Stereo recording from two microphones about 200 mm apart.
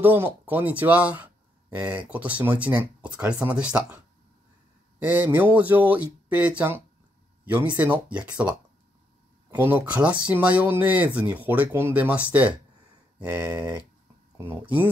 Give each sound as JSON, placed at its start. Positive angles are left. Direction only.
{"t": 0.0, "sound": "speech", "side_deg": -10}